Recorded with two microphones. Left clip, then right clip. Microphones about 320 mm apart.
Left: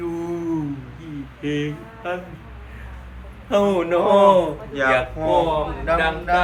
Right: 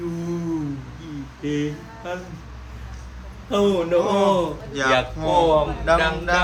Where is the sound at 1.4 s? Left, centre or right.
Centre.